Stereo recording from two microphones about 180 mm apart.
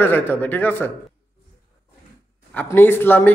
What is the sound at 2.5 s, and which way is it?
Speech, 10° left (ahead or behind).